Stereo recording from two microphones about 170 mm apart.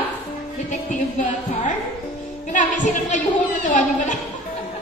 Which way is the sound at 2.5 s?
50° left (ahead or behind).